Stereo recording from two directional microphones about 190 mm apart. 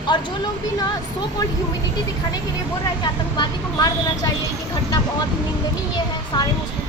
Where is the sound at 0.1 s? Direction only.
25° left (ahead or behind).